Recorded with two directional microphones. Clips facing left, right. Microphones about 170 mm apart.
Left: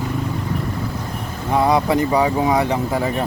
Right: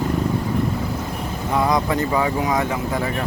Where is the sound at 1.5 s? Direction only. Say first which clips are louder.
Left 3 dB; 25° left (ahead or behind).